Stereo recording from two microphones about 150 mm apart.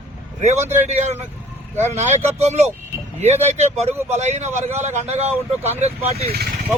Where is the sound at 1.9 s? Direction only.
45° right (ahead or behind).